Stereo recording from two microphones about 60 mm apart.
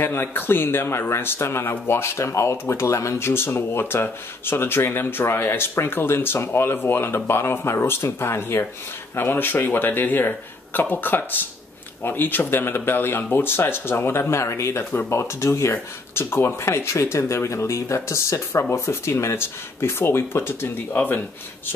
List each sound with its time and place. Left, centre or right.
0.0 s speech: left